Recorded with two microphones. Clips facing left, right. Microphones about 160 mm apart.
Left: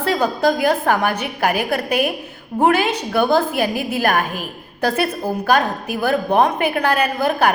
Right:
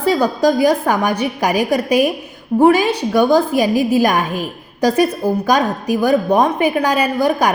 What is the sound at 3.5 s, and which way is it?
Speech, 40° right (ahead or behind).